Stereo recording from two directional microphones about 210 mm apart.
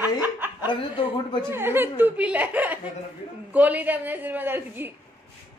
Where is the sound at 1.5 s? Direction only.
10° right (ahead or behind).